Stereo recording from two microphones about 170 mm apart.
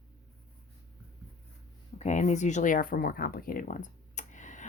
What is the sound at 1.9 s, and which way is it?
Speech, 45° left (ahead or behind).